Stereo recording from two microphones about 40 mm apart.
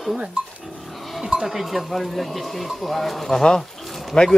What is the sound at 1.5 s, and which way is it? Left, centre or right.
Speech, centre.